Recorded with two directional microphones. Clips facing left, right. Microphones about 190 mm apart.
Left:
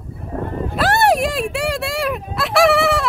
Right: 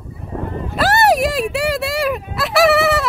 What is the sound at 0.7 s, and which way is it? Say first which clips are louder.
Fowl: right 1 dB; centre (ahead or behind).